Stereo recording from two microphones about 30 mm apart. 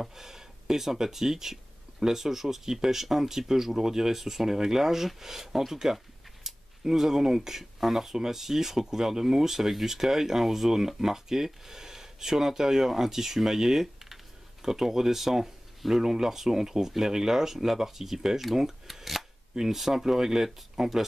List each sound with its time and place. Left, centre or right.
0.0 s speech: centre
6.5 s a sound: centre
6.8 s speech: centre
18.9 s camera: centre
19.5 s speech: centre